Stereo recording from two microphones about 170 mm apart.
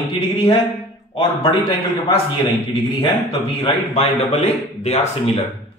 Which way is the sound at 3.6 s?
40° left (ahead or behind).